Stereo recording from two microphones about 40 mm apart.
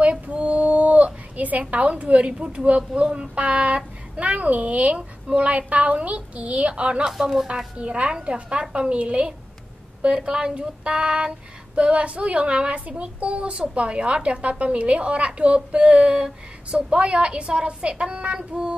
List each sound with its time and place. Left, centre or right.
0.0 s a sound: right
3.1 s a child's voice: right
7.1 s speech: centre
7.4 s speech: right